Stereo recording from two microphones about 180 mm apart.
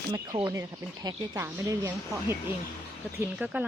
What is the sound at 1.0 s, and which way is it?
Speech, 20° right (ahead or behind).